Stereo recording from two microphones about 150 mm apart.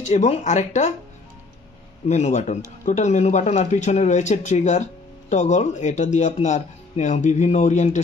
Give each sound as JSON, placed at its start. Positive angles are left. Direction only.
{"t": 0.0, "sound": "speech", "side_deg": 50}
{"t": 2.0, "sound": "speech", "side_deg": 50}